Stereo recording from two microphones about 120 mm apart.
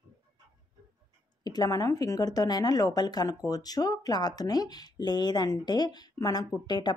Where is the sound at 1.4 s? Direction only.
35° left (ahead or behind).